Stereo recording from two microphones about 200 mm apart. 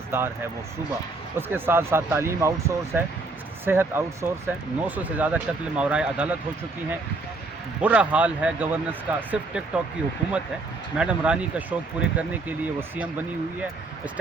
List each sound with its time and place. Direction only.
0.1 s speech: 10° right (ahead or behind)
1.4 s speech: 10° right (ahead or behind)
7.8 s speech: 5° right (ahead or behind)
10.9 s speech: 5° right (ahead or behind)